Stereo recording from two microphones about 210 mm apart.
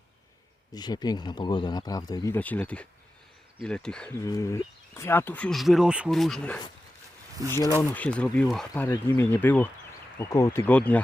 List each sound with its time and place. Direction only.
0.7 s speech: 20° left (ahead or behind); by 4.1 s 5° left (ahead or behind)
4.3 s speech: 15° left (ahead or behind)